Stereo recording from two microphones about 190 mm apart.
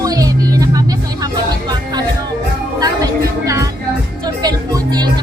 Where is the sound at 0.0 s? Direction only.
20° right (ahead or behind).